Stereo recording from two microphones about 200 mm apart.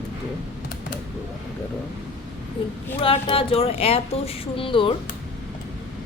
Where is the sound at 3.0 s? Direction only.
25° left (ahead or behind).